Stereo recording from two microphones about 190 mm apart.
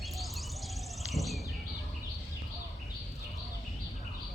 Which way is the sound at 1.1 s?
Centre (ahead or behind).